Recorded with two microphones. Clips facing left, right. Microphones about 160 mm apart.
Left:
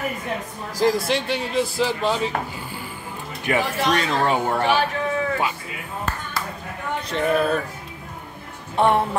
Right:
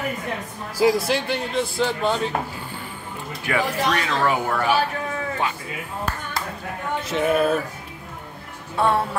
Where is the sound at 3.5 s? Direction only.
25° left (ahead or behind).